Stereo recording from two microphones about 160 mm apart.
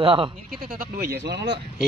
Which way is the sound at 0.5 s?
65° right (ahead or behind).